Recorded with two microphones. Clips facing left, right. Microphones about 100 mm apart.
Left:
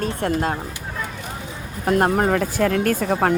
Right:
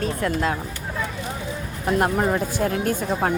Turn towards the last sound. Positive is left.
turn(degrees=55)  # may be behind; listen again after turning